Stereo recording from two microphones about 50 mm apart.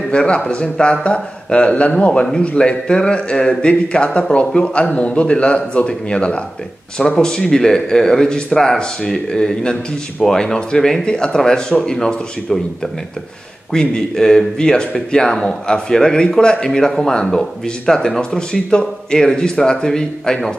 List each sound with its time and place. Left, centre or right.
0.1 s speech: left